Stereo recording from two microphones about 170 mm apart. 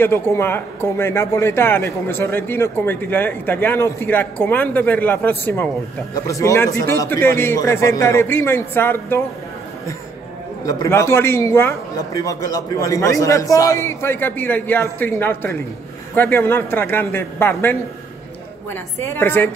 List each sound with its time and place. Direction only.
0.0 s speech: 15° left (ahead or behind)
10.6 s speech: 20° left (ahead or behind)